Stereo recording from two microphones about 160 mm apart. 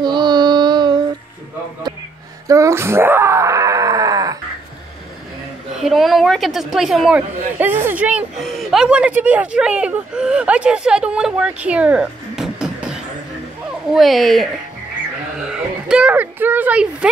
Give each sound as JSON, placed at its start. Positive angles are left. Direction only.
{"t": 0.0, "sound": "child singing", "side_deg": -25}
{"t": 2.4, "sound": "wail", "side_deg": -20}
{"t": 5.8, "sound": "a woman's voice", "side_deg": 0}
{"t": 15.5, "sound": "speech", "side_deg": -5}